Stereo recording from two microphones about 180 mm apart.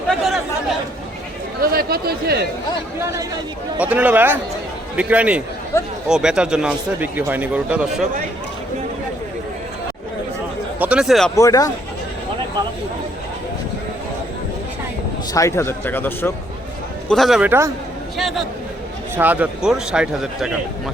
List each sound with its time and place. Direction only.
0.1 s chatter: centre (ahead or behind)
1.7 s speech: 55° right (ahead or behind)
3.8 s speech: 10° right (ahead or behind)
5.7 s speech: 15° left (ahead or behind)
6.1 s speech: 5° right (ahead or behind)
10.8 s speech: 5° right (ahead or behind)
11.3 s speech: 20° left (ahead or behind)
15.3 s speech: 15° left (ahead or behind)
17.1 s a man's voice: centre (ahead or behind)